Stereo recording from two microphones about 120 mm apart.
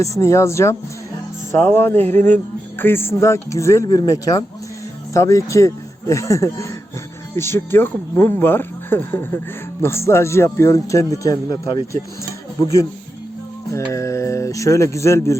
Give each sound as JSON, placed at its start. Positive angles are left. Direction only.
{"t": 0.0, "sound": "speech", "side_deg": 25}
{"t": 12.2, "sound": "music", "side_deg": 25}
{"t": 13.7, "sound": "speech", "side_deg": 25}